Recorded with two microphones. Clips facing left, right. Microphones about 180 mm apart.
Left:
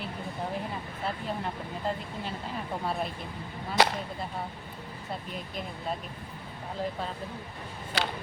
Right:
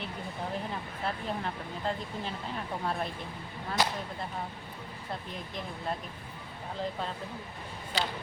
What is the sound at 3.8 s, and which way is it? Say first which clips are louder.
Whip: left 6 dB; 70° left (ahead or behind).